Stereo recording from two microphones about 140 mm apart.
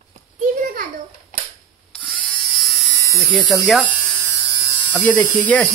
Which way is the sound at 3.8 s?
5° left (ahead or behind).